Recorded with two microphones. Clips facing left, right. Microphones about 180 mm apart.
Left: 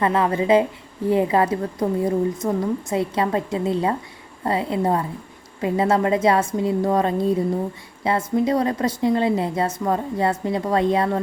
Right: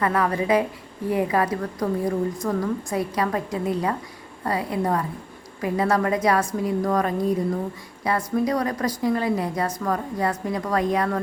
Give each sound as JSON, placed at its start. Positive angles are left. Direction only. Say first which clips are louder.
{"t": 0.0, "sound": "speech", "louder": "left 3 dB", "side_deg": 25}